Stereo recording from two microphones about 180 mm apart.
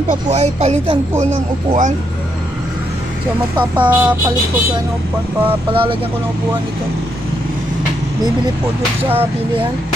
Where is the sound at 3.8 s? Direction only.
10° right (ahead or behind).